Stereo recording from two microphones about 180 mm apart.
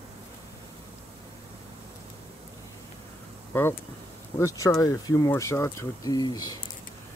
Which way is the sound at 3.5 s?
10° left (ahead or behind).